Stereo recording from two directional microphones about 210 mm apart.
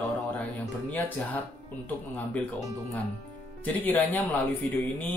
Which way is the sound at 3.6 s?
10° left (ahead or behind).